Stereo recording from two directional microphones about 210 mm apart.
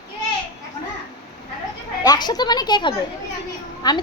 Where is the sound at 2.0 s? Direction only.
20° left (ahead or behind).